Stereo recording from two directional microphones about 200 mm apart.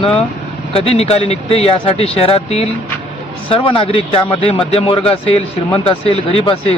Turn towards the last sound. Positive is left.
turn(degrees=30)  # may be behind; listen again after turning